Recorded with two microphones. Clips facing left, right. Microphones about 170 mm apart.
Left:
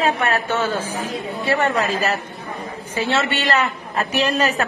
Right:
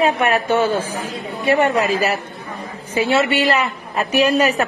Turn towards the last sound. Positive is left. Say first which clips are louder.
# right 4 dB
turn(degrees=-10)  # may be behind; listen again after turning